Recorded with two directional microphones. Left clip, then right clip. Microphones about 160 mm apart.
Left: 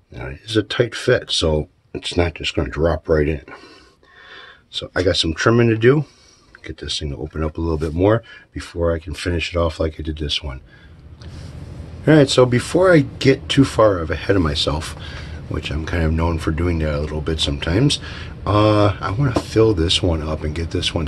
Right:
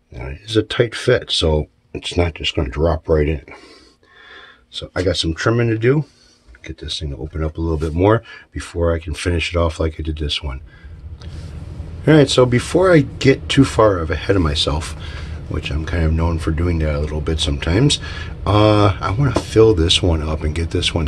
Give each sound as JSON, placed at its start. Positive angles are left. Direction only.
{"t": 0.1, "sound": "speech", "side_deg": 0}
{"t": 4.7, "sound": "speech", "side_deg": 30}
{"t": 8.0, "sound": "speech", "side_deg": -15}
{"t": 12.0, "sound": "speech", "side_deg": -5}
{"t": 14.0, "sound": "speech", "side_deg": 0}